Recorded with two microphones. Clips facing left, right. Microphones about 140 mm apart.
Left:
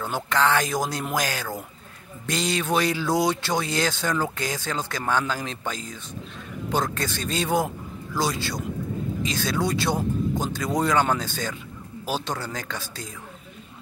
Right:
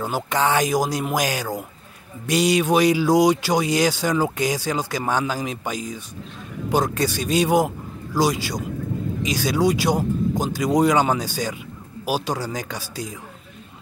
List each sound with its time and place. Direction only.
0.0 s speech: 15° right (ahead or behind)